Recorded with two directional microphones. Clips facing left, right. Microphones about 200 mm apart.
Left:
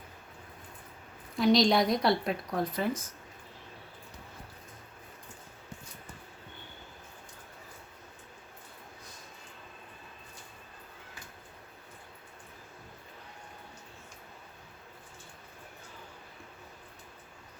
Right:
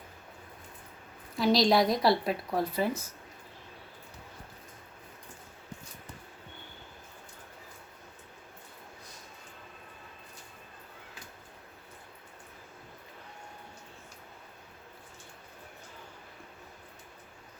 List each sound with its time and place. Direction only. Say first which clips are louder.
1.4 s a woman's voice: even; centre (ahead or behind)